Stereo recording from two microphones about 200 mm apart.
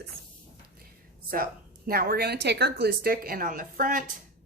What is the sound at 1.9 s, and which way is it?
A woman's voice, 50° right (ahead or behind).